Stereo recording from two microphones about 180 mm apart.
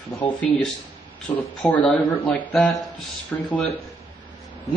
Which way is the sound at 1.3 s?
10° left (ahead or behind).